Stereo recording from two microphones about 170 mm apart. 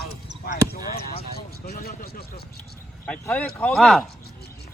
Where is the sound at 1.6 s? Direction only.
55° left (ahead or behind).